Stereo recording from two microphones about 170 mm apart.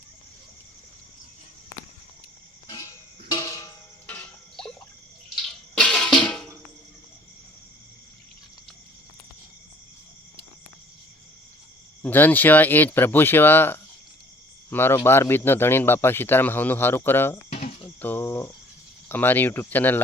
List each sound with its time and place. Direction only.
2.6 s a sound: 25° left (ahead or behind)
4.0 s music: 5° left (ahead or behind)
5.7 s a sound: 5° left (ahead or behind)
12.0 s speech: 10° left (ahead or behind)
17.5 s cricket: 35° left (ahead or behind)
18.0 s speech: 10° left (ahead or behind)